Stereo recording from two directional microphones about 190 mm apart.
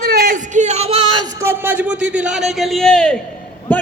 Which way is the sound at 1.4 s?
10° right (ahead or behind).